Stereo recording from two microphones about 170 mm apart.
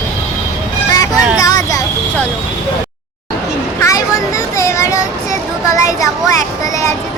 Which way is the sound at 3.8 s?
20° left (ahead or behind).